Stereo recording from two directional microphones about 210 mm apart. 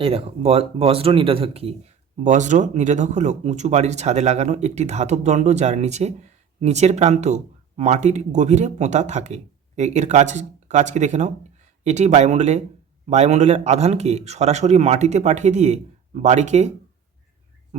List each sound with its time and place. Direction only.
0.0 s speech: 30° right (ahead or behind)